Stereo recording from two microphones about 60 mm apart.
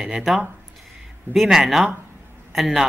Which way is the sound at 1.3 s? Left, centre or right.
Centre.